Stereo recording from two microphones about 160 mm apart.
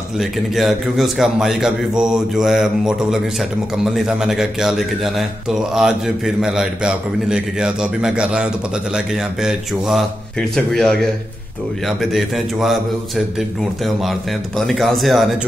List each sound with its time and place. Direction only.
0.2 s a man's voice: centre (ahead or behind)